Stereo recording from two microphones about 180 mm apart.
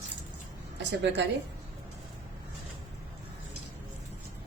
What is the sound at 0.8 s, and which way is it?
Speech, 75° right (ahead or behind).